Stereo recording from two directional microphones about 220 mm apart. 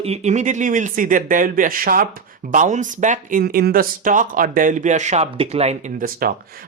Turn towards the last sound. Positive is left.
turn(degrees=-40)  # may be behind; listen again after turning